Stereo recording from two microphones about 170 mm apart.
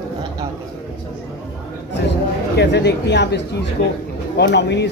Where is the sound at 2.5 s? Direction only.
80° left.